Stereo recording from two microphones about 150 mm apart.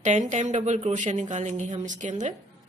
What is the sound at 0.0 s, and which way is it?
Speech, 55° right (ahead or behind).